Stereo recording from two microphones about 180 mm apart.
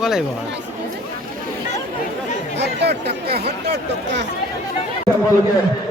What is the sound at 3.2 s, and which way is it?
Speech, 65° right (ahead or behind).